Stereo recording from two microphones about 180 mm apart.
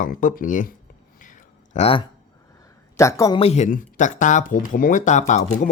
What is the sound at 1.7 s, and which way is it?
Speech, 30° left (ahead or behind).